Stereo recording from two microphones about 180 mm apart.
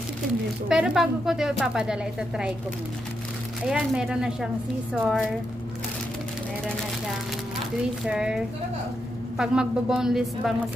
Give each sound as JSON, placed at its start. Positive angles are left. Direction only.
{"t": 0.7, "sound": "speech", "side_deg": -5}
{"t": 3.6, "sound": "speech", "side_deg": -5}
{"t": 8.0, "sound": "speech", "side_deg": -5}
{"t": 9.4, "sound": "speech", "side_deg": -5}